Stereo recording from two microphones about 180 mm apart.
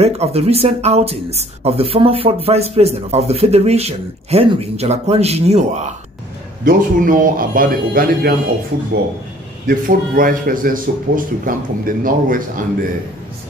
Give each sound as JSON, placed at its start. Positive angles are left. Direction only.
{"t": 0.0, "sound": "speech", "side_deg": -35}
{"t": 6.6, "sound": "speech", "side_deg": -50}
{"t": 9.7, "sound": "speech", "side_deg": -50}